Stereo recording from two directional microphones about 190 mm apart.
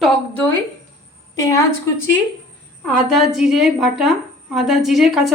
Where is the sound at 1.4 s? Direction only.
15° left (ahead or behind).